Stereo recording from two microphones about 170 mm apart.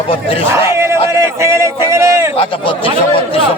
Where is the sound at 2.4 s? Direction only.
30° left (ahead or behind).